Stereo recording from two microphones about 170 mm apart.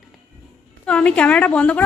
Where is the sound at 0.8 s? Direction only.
5° left (ahead or behind).